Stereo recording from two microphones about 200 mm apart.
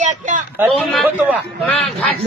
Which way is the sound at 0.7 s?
Centre (ahead or behind).